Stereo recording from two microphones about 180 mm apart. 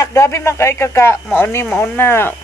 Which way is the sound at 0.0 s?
15° left (ahead or behind).